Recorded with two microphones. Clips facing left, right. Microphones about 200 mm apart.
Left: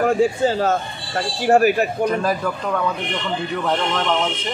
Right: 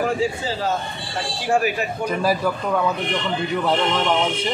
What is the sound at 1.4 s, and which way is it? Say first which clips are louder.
Speech: left 6 dB; 50° left (ahead or behind).